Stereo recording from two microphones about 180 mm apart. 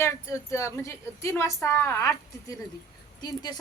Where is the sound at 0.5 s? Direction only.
15° left (ahead or behind).